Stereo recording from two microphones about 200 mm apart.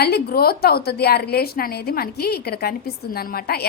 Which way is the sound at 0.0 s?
50° left (ahead or behind).